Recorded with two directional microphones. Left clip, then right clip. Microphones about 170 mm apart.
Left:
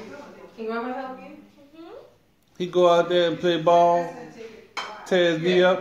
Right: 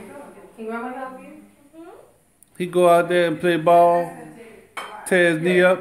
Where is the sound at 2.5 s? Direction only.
30° right (ahead or behind).